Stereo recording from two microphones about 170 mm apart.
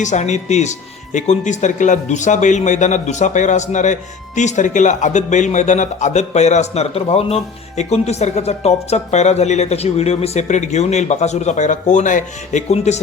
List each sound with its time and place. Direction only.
0.0 s speech: 45° left (ahead or behind)